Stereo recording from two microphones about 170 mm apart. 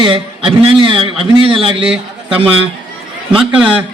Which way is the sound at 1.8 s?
5° right (ahead or behind).